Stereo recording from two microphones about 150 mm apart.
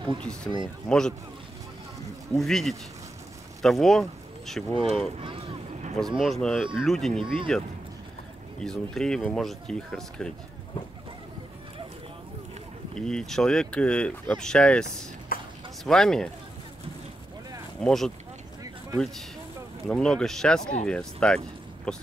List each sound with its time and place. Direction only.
0.2 s speech: 5° left (ahead or behind)
2.3 s speech: centre (ahead or behind)
5.9 s speech: centre (ahead or behind)
12.9 s speech: 5° left (ahead or behind)
15.3 s a sound: 75° left (ahead or behind)
15.8 s speech: 5° left (ahead or behind)
17.8 s speech: centre (ahead or behind)